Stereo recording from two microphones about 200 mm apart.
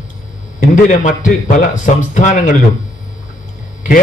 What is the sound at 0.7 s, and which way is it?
Speech, 40° left (ahead or behind).